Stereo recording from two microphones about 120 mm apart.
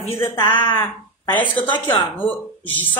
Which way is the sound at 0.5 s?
40° left (ahead or behind).